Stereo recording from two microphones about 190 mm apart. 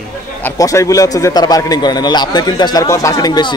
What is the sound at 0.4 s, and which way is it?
A man's voice, 15° left (ahead or behind).